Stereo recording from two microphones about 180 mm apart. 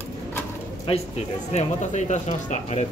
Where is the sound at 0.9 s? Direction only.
35° left (ahead or behind).